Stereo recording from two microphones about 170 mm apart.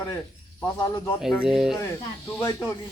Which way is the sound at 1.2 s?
Centre (ahead or behind).